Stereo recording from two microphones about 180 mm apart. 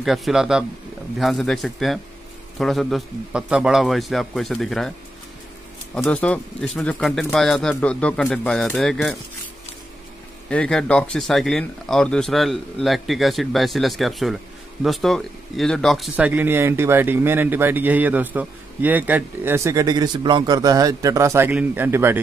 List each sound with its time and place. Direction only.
0.0 s speech: centre (ahead or behind)
5.9 s speech: 5° left (ahead or behind)
10.5 s speech: 5° left (ahead or behind); by 22.2 s 10° right (ahead or behind)